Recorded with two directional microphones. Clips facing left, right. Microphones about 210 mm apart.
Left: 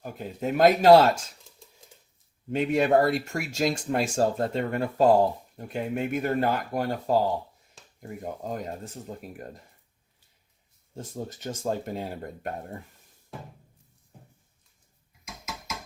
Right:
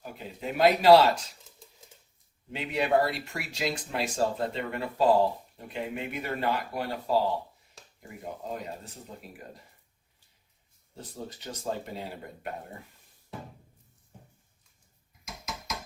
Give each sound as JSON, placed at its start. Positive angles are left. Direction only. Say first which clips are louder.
{"t": 0.0, "sound": "speech", "louder": "left 6 dB", "side_deg": 45}
{"t": 2.5, "sound": "speech", "louder": "left 5 dB", "side_deg": 45}
{"t": 8.2, "sound": "speech", "louder": "left 3 dB", "side_deg": 45}
{"t": 10.9, "sound": "speech", "louder": "left 5 dB", "side_deg": 45}